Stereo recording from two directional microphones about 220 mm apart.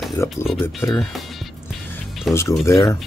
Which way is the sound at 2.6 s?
15° left (ahead or behind).